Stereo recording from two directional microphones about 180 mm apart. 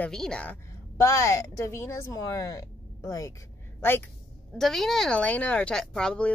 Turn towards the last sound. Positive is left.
turn(degrees=5)  # may be behind; listen again after turning